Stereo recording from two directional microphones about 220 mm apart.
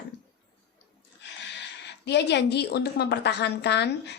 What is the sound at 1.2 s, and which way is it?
A woman's voice, 55° left (ahead or behind).